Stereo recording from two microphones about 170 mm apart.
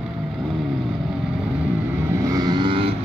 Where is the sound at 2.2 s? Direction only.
20° right (ahead or behind).